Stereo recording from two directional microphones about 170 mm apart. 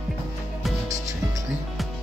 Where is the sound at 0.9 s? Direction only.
20° right (ahead or behind).